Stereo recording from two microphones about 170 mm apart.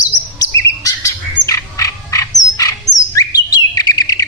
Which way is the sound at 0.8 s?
20° left (ahead or behind).